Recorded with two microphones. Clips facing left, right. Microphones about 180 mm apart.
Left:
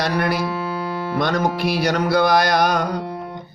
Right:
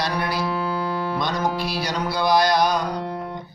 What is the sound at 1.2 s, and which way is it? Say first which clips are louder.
Music: left 8 dB; 55° left (ahead or behind).